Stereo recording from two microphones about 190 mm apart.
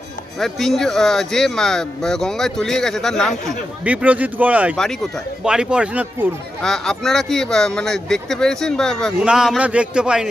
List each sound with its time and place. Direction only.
0.4 s speech: centre (ahead or behind)